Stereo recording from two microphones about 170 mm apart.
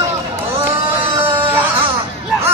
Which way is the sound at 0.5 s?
15° right (ahead or behind).